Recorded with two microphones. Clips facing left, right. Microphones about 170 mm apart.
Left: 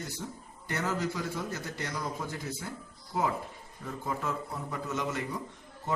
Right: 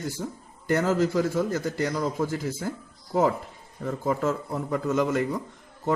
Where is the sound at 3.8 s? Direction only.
50° right (ahead or behind).